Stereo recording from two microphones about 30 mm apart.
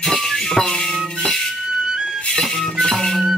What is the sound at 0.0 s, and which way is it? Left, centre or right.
Music, centre.